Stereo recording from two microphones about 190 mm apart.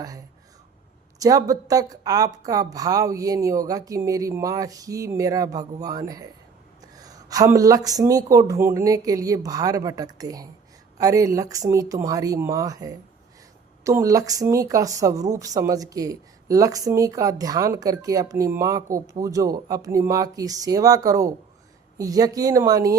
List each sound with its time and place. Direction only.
1.2 s a woman's voice: 20° right (ahead or behind)